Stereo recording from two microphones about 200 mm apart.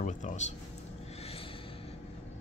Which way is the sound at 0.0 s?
40° left (ahead or behind).